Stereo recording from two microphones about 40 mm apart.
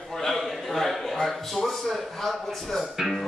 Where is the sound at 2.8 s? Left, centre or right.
Centre.